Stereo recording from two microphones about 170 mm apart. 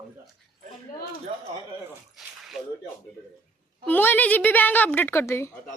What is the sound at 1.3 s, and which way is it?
Speech, 30° right (ahead or behind).